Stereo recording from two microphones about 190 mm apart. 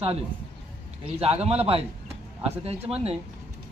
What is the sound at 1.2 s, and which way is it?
Speech, 30° right (ahead or behind).